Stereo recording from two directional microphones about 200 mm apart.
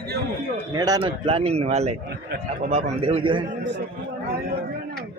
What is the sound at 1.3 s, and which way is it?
Speech, 30° right (ahead or behind).